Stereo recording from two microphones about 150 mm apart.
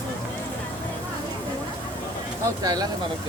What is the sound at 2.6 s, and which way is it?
Speech, 25° right (ahead or behind).